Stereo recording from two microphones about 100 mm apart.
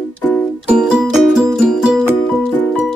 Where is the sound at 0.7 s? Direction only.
10° right (ahead or behind).